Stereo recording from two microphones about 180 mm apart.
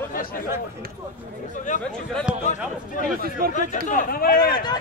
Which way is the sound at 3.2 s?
55° right (ahead or behind).